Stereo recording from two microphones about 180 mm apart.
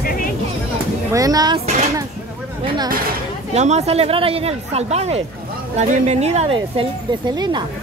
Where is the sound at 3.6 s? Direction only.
35° right (ahead or behind).